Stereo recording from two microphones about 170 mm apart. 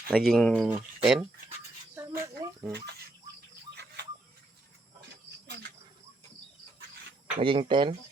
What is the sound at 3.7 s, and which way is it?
Bird, 80° right.